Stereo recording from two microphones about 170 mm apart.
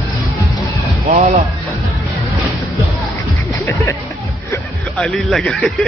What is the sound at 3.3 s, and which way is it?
Music, 15° left (ahead or behind).